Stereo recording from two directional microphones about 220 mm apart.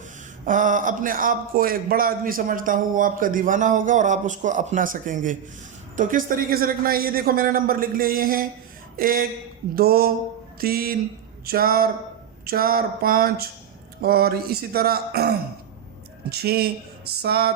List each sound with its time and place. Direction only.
0.4 s a man's voice: 35° right (ahead or behind)